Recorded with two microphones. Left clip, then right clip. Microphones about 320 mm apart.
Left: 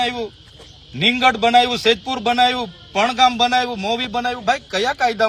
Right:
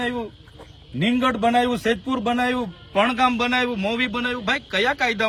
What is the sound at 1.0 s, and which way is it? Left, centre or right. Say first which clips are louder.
A man's voice: left 6 dB; centre.